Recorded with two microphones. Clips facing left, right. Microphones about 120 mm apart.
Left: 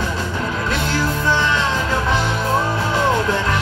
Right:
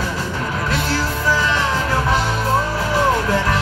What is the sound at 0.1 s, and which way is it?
Music, 20° left (ahead or behind).